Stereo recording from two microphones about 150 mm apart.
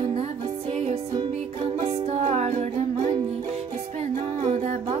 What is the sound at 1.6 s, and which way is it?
Music, 45° right (ahead or behind).